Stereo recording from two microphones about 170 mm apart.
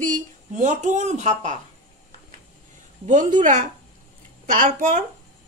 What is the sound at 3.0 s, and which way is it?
A woman's voice, 45° right (ahead or behind).